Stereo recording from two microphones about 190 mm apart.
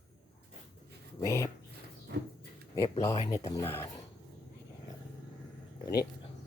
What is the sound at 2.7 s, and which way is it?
Speech, 15° left (ahead or behind).